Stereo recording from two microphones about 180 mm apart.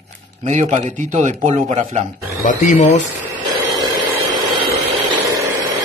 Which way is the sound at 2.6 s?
45° left (ahead or behind).